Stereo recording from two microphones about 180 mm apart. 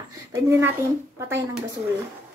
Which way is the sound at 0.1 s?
20° right (ahead or behind).